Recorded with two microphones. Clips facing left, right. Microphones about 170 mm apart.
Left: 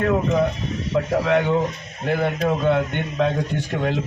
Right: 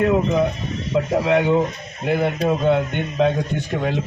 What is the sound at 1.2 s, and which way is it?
Speech, 20° right (ahead or behind).